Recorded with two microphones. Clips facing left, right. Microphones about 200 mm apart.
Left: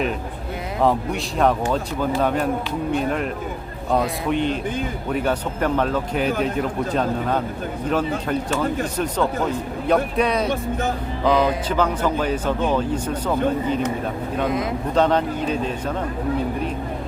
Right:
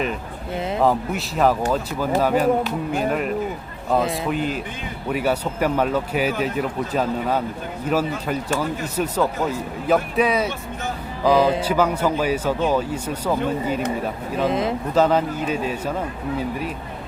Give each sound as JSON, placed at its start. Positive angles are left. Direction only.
{"t": 0.8, "sound": "speech", "side_deg": 0}
{"t": 14.4, "sound": "speech", "side_deg": -25}
{"t": 14.9, "sound": "speech", "side_deg": -5}